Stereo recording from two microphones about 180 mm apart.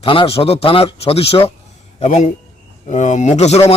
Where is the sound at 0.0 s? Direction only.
30° left (ahead or behind).